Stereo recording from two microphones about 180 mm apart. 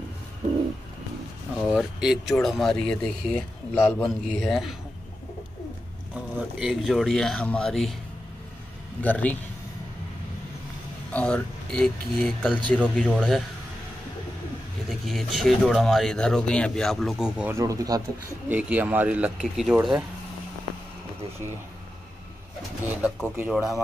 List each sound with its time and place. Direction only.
1.6 s speech: centre (ahead or behind)
6.3 s speech: centre (ahead or behind)
9.0 s speech: 10° left (ahead or behind)
11.1 s speech: 5° left (ahead or behind)
14.9 s speech: centre (ahead or behind)
17.6 s speech: 20° right (ahead or behind)
18.5 s speech: 10° right (ahead or behind)
22.8 s speech: 10° right (ahead or behind)